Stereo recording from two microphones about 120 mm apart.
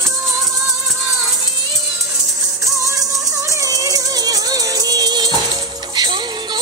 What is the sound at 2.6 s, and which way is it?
Music, 25° right (ahead or behind).